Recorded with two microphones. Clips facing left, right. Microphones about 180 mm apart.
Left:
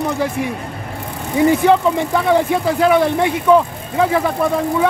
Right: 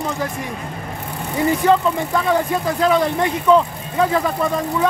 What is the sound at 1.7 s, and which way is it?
Speech, 15° left (ahead or behind).